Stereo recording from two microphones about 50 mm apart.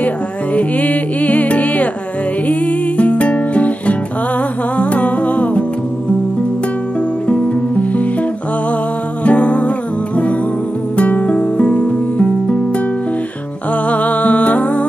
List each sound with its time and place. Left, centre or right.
0.6 s music: left
7.2 s music: left
11.0 s music: left
13.8 s music: left